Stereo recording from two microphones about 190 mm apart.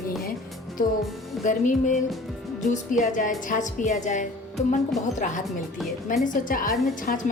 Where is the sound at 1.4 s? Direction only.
40° left (ahead or behind).